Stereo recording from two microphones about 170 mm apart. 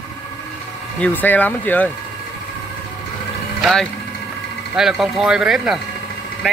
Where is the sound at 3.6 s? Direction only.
Centre (ahead or behind).